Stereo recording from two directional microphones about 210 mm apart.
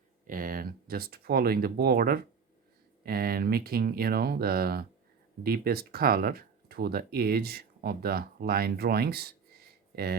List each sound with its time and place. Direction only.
0.3 s speech: 40° right (ahead or behind)